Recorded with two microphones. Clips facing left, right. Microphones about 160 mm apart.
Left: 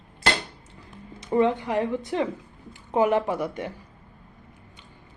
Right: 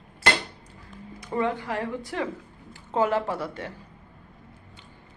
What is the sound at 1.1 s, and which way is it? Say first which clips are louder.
A woman's voice: left 5 dB; 20° left (ahead or behind).